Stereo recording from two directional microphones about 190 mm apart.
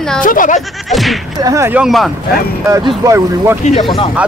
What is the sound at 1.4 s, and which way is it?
Speech, 15° right (ahead or behind).